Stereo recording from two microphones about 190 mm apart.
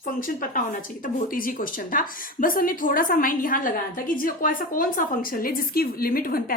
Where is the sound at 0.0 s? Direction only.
45° left (ahead or behind).